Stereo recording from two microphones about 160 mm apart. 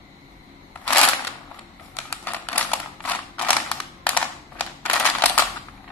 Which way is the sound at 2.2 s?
10° left (ahead or behind).